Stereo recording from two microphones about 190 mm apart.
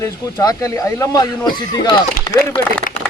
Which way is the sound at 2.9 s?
45° left (ahead or behind).